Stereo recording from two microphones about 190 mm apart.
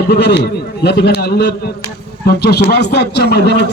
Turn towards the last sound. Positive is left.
turn(degrees=60)  # may be behind; listen again after turning